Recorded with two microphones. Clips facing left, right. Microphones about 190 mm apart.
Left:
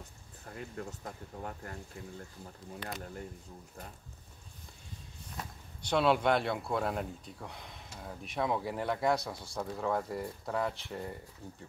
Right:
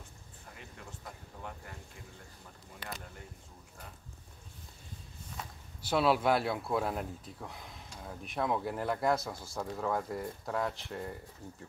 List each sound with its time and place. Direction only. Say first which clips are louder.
0.6 s speech: left 10 dB; 45° left (ahead or behind)
5.4 s speech: left 2 dB; 5° right (ahead or behind)